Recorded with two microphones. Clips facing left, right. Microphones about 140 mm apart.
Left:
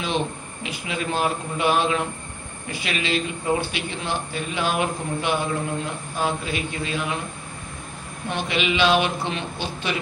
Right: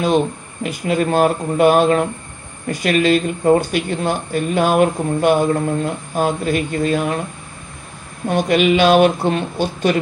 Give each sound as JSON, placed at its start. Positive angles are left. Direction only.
{"t": 0.7, "sound": "speech", "side_deg": -50}
{"t": 8.3, "sound": "speech", "side_deg": -45}